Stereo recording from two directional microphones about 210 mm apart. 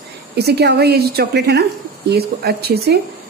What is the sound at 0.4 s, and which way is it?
A woman's voice, 50° right (ahead or behind).